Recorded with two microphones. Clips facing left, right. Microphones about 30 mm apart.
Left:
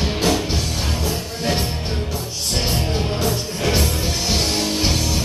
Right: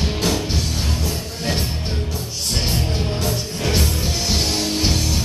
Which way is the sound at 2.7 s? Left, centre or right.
Centre.